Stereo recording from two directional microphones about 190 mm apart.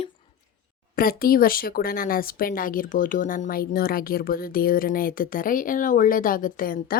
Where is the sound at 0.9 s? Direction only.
50° left (ahead or behind).